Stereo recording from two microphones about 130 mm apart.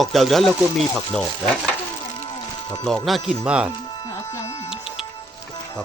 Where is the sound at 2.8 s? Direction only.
5° left (ahead or behind).